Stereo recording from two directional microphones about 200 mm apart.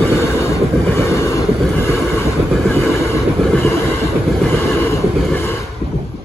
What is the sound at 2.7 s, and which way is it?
Train, 15° left (ahead or behind).